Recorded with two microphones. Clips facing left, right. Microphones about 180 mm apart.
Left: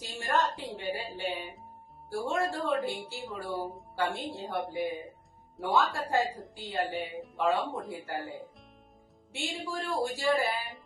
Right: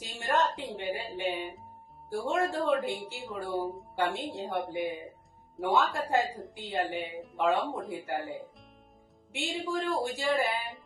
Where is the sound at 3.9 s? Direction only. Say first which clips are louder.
Right 1 dB; 15° right (ahead or behind).